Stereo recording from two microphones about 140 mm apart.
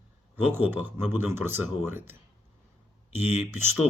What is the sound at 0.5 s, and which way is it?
Speech, 15° right (ahead or behind).